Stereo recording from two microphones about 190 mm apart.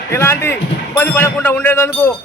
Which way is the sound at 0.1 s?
15° left (ahead or behind).